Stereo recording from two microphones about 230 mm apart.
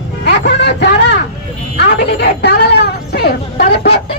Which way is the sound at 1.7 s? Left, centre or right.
Left.